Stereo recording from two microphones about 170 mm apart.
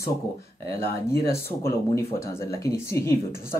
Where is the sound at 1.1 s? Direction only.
15° left (ahead or behind).